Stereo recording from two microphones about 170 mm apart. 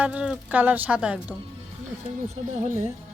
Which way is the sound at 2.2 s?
45° right (ahead or behind).